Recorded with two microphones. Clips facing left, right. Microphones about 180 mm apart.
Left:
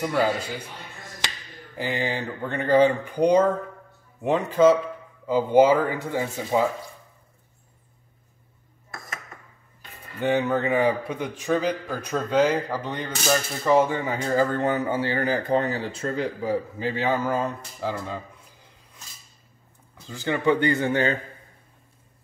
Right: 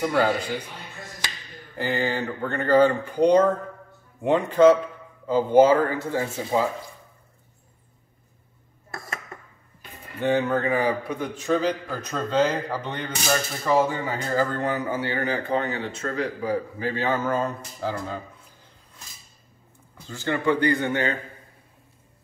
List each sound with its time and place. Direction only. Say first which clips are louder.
0.0 s speech: right 1 dB; 5° left (ahead or behind)
1.8 s a man's voice: right 2 dB; 15° left (ahead or behind)
10.2 s a man's voice: even; 15° left (ahead or behind)
17.8 s speech: even; centre (ahead or behind)
20.1 s a man's voice: left 1 dB; 15° left (ahead or behind)
20.6 s a man's voice: left 1 dB; 30° left (ahead or behind)